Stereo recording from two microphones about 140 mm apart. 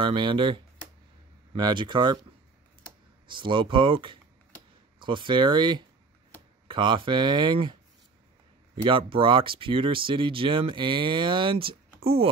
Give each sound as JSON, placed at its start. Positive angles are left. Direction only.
{"t": 0.0, "sound": "speech", "side_deg": -35}
{"t": 3.3, "sound": "speech", "side_deg": -35}
{"t": 8.8, "sound": "speech", "side_deg": -40}